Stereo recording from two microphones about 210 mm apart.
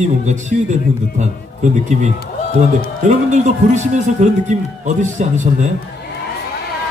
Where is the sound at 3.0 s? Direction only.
35° right (ahead or behind).